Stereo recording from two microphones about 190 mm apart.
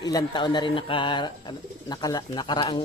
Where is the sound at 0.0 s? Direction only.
20° left (ahead or behind).